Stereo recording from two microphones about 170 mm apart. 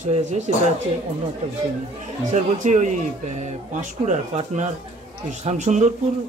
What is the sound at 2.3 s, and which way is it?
Speech, 45° right (ahead or behind).